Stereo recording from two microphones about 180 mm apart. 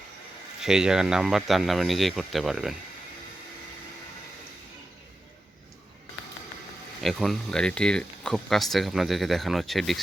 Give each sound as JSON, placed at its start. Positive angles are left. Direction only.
{"t": 0.6, "sound": "speech", "side_deg": -5}
{"t": 7.0, "sound": "speech", "side_deg": 0}